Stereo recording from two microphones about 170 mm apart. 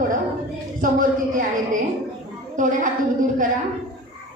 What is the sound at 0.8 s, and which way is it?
Speech, 50° right (ahead or behind).